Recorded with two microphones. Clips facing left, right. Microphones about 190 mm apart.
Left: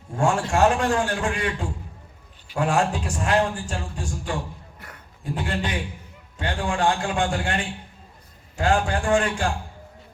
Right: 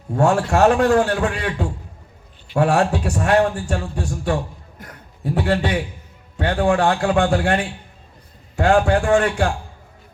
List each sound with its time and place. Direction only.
0.2 s a man's voice: 65° right (ahead or behind)